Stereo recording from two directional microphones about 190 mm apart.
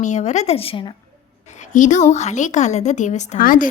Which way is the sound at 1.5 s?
40° left (ahead or behind).